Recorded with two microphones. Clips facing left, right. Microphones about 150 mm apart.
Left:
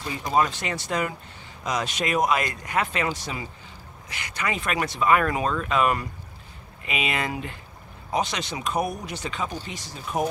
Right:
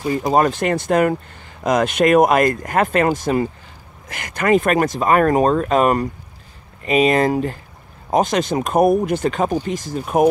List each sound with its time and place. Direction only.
0.1 s speech: 50° right (ahead or behind)